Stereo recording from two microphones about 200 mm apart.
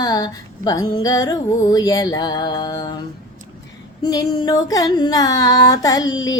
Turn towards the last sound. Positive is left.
turn(degrees=20)  # may be behind; listen again after turning